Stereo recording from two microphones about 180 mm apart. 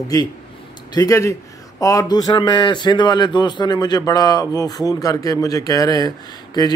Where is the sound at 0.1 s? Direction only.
20° left (ahead or behind).